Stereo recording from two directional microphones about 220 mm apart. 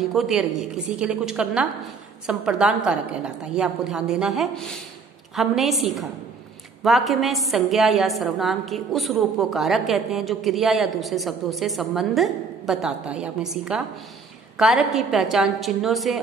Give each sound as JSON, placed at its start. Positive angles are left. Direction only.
{"t": 0.0, "sound": "a woman's voice", "side_deg": 0}